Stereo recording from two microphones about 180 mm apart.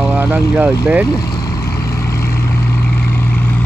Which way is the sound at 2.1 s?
15° left (ahead or behind).